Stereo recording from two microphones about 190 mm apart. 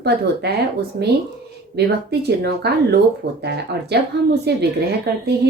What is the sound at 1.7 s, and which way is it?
Speech, 60° right (ahead or behind).